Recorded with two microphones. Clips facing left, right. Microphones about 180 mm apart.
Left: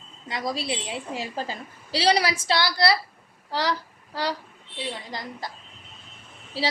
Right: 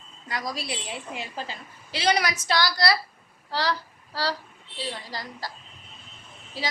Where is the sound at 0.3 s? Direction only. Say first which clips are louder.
Left 3 dB; 25° left (ahead or behind).